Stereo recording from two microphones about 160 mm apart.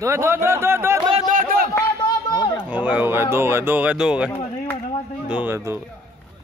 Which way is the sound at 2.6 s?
10° right (ahead or behind).